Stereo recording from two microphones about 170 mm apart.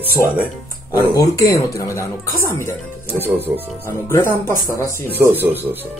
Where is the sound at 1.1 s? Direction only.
20° left (ahead or behind).